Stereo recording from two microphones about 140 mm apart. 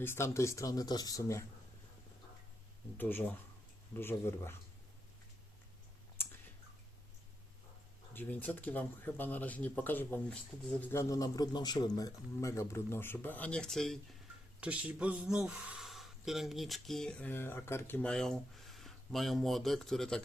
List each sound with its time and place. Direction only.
0.0 s speech: 20° left (ahead or behind)
3.0 s speech: 15° left (ahead or behind)
8.1 s speech: 15° left (ahead or behind)
10.9 s speech: 25° left (ahead or behind); by 14.0 s centre (ahead or behind)
14.6 s a man's voice: 10° right (ahead or behind)